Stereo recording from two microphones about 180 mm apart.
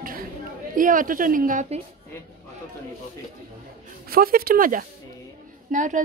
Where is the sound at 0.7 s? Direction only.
50° right (ahead or behind).